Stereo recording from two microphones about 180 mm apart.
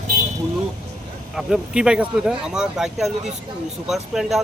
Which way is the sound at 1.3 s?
5° right (ahead or behind).